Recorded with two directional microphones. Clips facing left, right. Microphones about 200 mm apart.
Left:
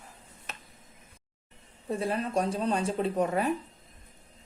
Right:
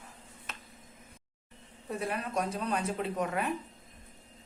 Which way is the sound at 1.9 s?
30° left (ahead or behind).